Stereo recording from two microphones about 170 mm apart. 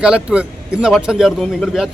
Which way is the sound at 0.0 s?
5° right (ahead or behind).